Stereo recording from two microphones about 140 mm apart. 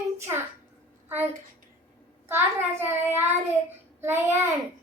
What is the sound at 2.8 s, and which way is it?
A child's voice, 15° right (ahead or behind).